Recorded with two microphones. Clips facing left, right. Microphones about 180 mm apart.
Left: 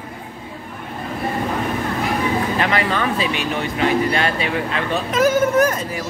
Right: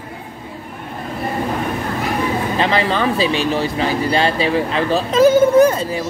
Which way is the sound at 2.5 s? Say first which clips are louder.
Right 2 dB; 30° right (ahead or behind).